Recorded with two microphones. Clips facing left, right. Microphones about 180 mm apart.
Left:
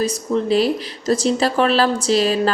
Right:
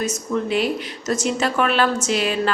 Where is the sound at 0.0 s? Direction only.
35° left (ahead or behind).